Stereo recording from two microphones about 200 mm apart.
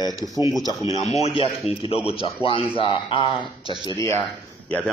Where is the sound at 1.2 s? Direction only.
30° left (ahead or behind).